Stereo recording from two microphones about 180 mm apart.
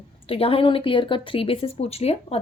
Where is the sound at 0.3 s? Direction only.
30° left (ahead or behind).